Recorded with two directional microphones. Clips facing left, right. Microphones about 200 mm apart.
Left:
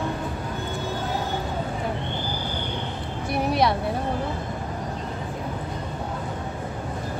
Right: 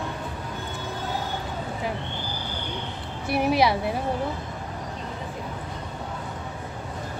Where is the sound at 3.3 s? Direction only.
5° right (ahead or behind).